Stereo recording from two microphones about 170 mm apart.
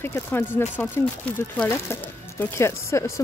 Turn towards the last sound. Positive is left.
turn(degrees=15)  # may be behind; listen again after turning